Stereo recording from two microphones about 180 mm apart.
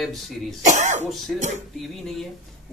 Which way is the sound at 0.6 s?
40° right (ahead or behind).